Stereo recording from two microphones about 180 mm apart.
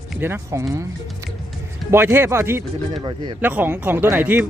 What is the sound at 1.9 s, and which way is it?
Speech, 15° right (ahead or behind).